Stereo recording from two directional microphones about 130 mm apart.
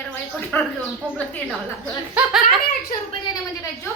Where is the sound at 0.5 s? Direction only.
15° left (ahead or behind).